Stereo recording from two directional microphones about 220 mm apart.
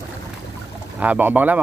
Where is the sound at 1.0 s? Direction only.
5° right (ahead or behind).